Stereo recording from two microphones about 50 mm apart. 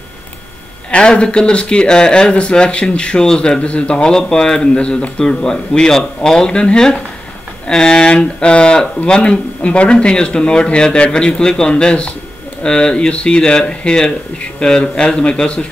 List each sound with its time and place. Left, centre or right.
0.9 s speech: left
3.5 s speech: left